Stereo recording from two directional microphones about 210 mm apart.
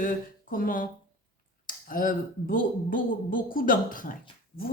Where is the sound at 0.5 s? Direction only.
40° left (ahead or behind).